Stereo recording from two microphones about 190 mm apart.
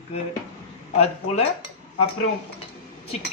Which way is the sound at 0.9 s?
30° left (ahead or behind).